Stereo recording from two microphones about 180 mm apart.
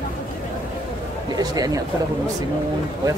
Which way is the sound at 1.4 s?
20° right (ahead or behind).